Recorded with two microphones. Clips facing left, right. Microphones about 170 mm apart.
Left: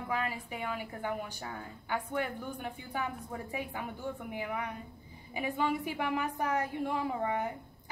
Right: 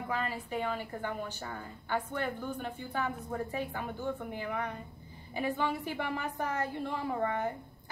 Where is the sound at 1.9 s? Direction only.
10° left (ahead or behind).